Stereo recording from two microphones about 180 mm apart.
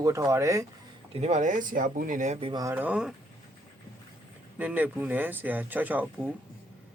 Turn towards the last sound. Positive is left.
turn(degrees=-10)  # may be behind; listen again after turning